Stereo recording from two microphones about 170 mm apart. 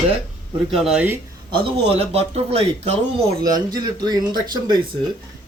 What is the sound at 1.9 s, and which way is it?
Speech, 35° right (ahead or behind).